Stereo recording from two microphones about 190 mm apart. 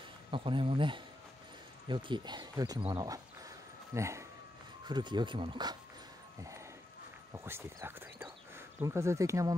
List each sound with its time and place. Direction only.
0.3 s speech: 25° right (ahead or behind)
7.3 s speech: 10° right (ahead or behind)